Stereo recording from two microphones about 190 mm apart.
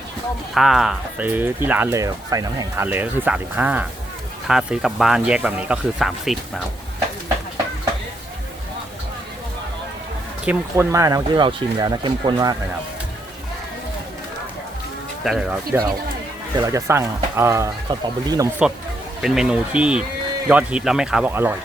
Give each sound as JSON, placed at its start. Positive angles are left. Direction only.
{"t": 0.5, "sound": "speech", "side_deg": 0}
{"t": 10.4, "sound": "speech", "side_deg": -10}
{"t": 15.2, "sound": "speech", "side_deg": 0}
{"t": 16.6, "sound": "speech", "side_deg": -15}
{"t": 19.2, "sound": "speech", "side_deg": -5}